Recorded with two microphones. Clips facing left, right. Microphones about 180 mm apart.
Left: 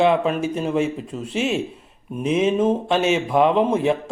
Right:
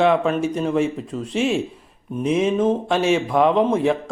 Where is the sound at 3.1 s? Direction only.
5° left (ahead or behind).